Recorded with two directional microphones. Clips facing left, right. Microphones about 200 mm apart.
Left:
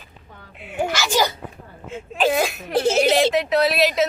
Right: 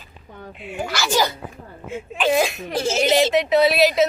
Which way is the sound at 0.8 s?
15° left (ahead or behind).